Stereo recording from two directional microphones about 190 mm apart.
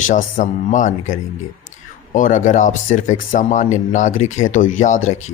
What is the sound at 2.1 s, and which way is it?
Speech, 45° left (ahead or behind).